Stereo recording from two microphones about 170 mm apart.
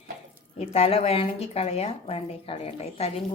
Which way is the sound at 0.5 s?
35° left (ahead or behind).